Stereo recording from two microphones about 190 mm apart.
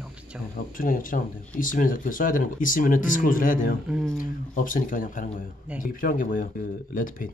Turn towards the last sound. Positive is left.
turn(degrees=45)  # may be behind; listen again after turning